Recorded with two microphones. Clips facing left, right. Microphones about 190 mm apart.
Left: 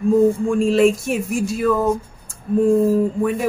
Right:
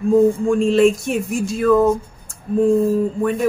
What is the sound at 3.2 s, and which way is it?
Speech, centre (ahead or behind).